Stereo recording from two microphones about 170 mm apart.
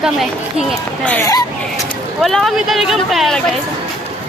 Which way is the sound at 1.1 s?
15° left (ahead or behind).